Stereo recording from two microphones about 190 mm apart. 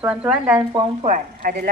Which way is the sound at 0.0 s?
5° right (ahead or behind).